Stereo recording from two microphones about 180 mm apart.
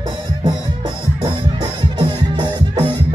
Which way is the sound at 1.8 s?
25° right (ahead or behind).